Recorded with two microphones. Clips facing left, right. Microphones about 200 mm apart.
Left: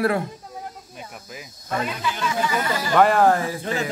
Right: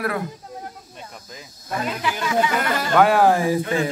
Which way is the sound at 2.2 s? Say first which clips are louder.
Right 3 dB; 65° right (ahead or behind).